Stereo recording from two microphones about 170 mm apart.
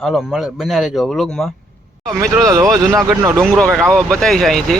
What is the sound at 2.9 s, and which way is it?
Speech, 20° right (ahead or behind).